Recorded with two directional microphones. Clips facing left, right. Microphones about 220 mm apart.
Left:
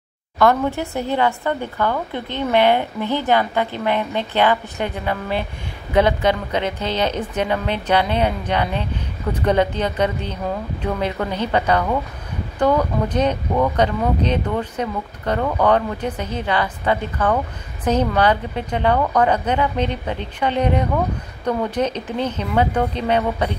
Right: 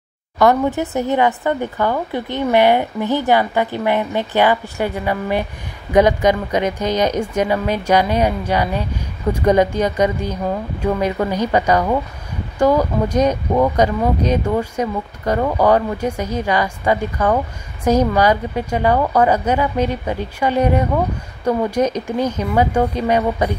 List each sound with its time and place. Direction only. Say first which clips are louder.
0.4 s a woman's voice: right 2 dB; 15° right (ahead or behind)